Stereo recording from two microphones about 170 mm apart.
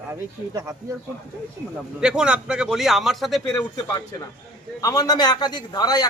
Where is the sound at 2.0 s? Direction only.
5° right (ahead or behind).